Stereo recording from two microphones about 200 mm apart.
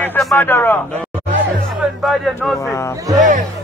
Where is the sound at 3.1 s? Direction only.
20° right (ahead or behind).